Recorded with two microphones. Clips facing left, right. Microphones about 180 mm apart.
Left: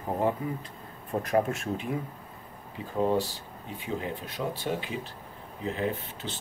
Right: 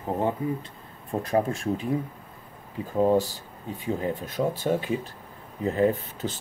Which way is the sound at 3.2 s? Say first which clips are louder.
Right 3 dB; 40° right (ahead or behind).